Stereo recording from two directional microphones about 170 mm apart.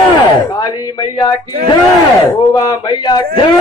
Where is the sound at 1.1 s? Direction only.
20° left (ahead or behind).